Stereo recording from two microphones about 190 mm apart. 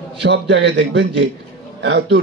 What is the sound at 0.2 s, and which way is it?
A man's voice, 65° right (ahead or behind).